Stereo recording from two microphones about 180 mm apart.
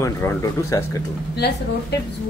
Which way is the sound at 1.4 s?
65° left (ahead or behind).